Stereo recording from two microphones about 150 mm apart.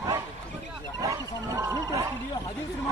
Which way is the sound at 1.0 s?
20° right (ahead or behind).